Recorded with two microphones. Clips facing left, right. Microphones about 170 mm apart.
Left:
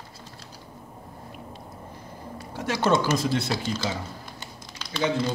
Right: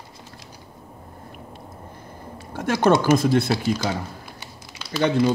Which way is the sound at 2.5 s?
50° right (ahead or behind).